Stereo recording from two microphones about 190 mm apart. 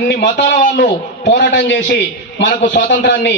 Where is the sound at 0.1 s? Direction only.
60° left (ahead or behind).